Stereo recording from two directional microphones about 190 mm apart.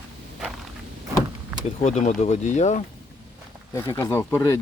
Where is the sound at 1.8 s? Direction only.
40° left (ahead or behind).